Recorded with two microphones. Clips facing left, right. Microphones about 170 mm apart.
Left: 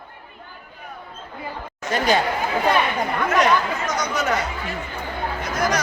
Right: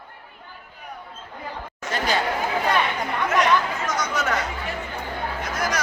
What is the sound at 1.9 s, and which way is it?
Speech, 15° left (ahead or behind).